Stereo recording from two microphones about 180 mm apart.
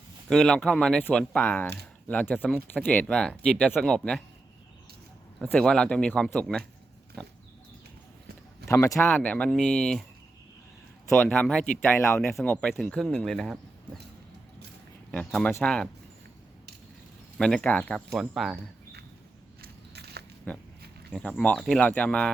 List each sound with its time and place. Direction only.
0.3 s speech: centre (ahead or behind)
5.4 s speech: 5° left (ahead or behind)
8.6 s speech: 15° left (ahead or behind)
11.1 s speech: 5° left (ahead or behind)
15.1 s speech: 5° left (ahead or behind)
17.3 s speech: 5° left (ahead or behind)
19.6 s biting: 65° right (ahead or behind)
20.5 s speech: 10° left (ahead or behind)